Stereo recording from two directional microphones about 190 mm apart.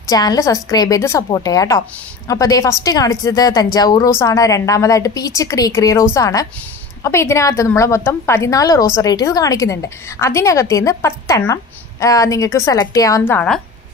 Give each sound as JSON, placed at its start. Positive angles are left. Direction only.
{"t": 0.0, "sound": "a woman's voice", "side_deg": 20}